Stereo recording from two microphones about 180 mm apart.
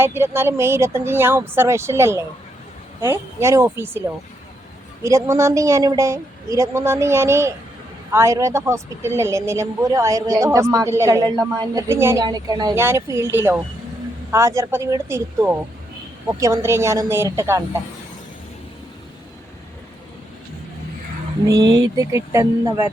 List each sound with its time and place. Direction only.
0.0 s a woman's voice: 15° right (ahead or behind)
5.0 s a woman's voice: 15° right (ahead or behind)
21.4 s speech: 20° right (ahead or behind)